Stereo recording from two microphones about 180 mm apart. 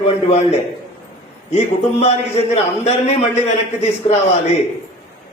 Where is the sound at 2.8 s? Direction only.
35° left (ahead or behind).